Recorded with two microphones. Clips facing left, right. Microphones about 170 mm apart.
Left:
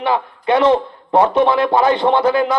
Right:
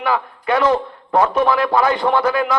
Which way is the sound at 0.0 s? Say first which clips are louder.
Left 2 dB; 25° left (ahead or behind).